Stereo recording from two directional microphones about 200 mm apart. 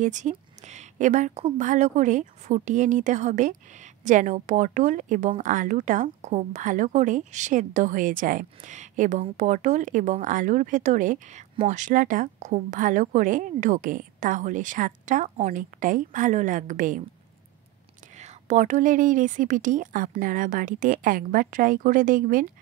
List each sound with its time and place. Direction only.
0.0 s a woman's voice: 40° right (ahead or behind)
18.1 s speech: 35° right (ahead or behind)